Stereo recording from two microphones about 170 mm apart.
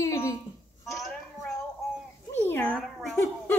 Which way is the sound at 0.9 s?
Centre (ahead or behind).